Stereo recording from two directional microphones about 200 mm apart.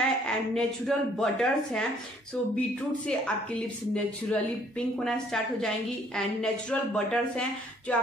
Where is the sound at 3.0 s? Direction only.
5° left (ahead or behind).